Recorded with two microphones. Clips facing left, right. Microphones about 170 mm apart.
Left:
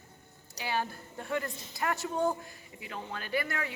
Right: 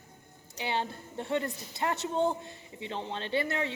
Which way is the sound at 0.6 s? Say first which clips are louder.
Right 1 dB; 25° right (ahead or behind).